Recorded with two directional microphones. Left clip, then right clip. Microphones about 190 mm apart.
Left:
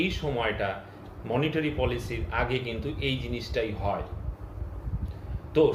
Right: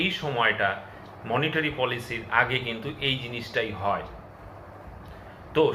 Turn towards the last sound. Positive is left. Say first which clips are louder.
# even
turn(degrees=20)  # may be behind; listen again after turning